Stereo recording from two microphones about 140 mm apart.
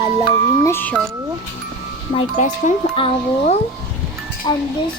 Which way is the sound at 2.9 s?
45° left (ahead or behind).